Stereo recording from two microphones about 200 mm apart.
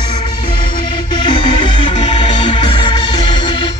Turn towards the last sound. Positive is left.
turn(degrees=25)  # may be behind; listen again after turning